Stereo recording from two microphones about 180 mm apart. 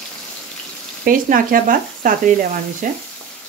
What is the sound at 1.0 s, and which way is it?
Sizzle, 50° right (ahead or behind).